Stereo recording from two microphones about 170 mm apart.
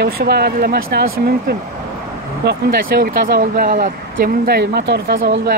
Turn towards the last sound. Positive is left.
turn(degrees=-85)